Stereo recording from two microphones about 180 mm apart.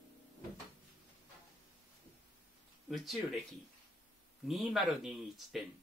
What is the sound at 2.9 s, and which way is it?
Speech, centre (ahead or behind).